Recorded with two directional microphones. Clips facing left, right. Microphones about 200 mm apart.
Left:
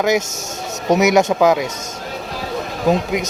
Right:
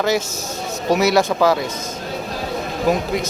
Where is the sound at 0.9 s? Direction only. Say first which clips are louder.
Left 2 dB; 20° left (ahead or behind).